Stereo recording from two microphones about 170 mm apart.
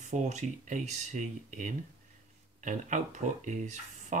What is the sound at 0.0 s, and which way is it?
Speech, 45° right (ahead or behind).